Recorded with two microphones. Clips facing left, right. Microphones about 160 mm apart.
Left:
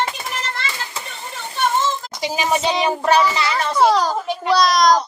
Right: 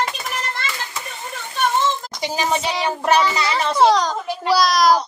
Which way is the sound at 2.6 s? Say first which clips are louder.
Left 3 dB; 20° left (ahead or behind).